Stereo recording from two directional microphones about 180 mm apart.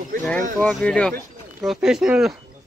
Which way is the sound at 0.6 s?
5° left (ahead or behind).